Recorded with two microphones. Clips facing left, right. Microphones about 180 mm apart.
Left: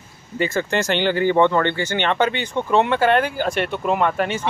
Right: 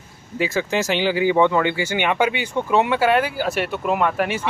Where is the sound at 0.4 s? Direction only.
Centre (ahead or behind).